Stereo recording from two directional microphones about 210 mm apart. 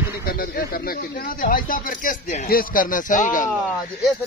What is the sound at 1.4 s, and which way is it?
Speech, 40° left (ahead or behind).